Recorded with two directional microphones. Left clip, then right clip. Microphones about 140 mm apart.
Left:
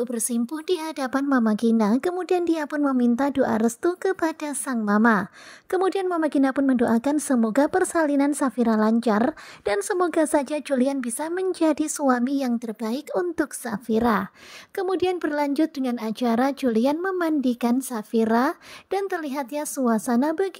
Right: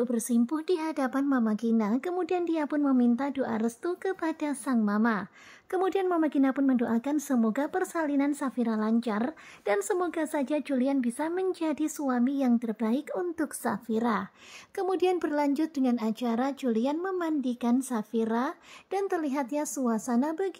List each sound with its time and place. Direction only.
0.0 s a woman's voice: 40° left (ahead or behind)
5.7 s speech: 30° left (ahead or behind)
14.8 s speech: 25° left (ahead or behind)